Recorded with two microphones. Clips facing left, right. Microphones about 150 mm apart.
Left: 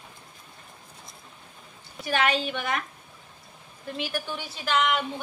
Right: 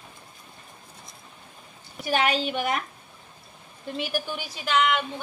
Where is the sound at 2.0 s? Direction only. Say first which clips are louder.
Right 2 dB; 20° right (ahead or behind).